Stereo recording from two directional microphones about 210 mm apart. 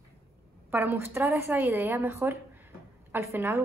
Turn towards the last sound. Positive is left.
turn(degrees=-10)  # may be behind; listen again after turning